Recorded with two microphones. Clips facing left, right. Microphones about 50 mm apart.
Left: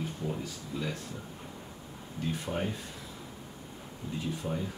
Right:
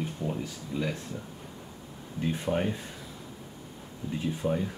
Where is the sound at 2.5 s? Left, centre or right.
Centre.